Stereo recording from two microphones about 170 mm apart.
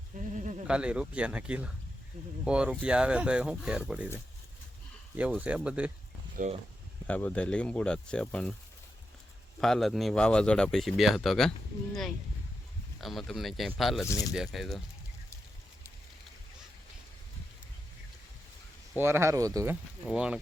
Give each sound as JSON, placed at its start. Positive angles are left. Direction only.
{"t": 0.1, "sound": "sheep", "side_deg": -50}
{"t": 0.7, "sound": "speech", "side_deg": -5}
{"t": 5.4, "sound": "speech", "side_deg": -5}
{"t": 6.4, "sound": "speech", "side_deg": -50}
{"t": 7.1, "sound": "speech", "side_deg": 5}
{"t": 9.6, "sound": "speech", "side_deg": 0}
{"t": 13.0, "sound": "speech", "side_deg": 0}
{"t": 14.1, "sound": "speech", "side_deg": 20}
{"t": 14.3, "sound": "speech", "side_deg": 0}
{"t": 18.9, "sound": "speech", "side_deg": -15}
{"t": 20.1, "sound": "speech", "side_deg": -5}